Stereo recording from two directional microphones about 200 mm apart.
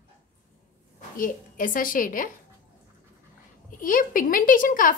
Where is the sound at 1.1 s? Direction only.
45° left (ahead or behind).